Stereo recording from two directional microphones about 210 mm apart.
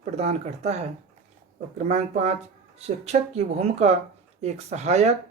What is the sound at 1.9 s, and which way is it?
Speech, 30° right (ahead or behind).